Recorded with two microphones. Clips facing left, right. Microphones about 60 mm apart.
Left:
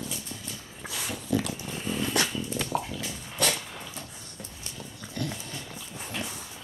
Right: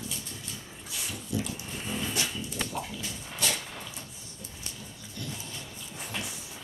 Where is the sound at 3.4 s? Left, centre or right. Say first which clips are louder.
Left 4 dB; left.